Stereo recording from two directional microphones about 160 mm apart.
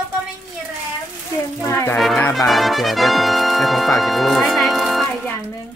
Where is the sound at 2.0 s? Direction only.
5° left (ahead or behind).